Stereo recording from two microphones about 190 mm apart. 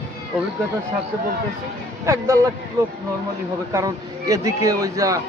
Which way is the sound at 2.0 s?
15° right (ahead or behind).